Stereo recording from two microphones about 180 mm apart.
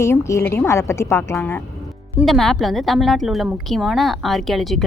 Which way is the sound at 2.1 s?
Centre (ahead or behind).